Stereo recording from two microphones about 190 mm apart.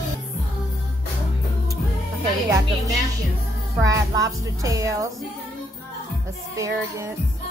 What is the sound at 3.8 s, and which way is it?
Speech, 20° right (ahead or behind).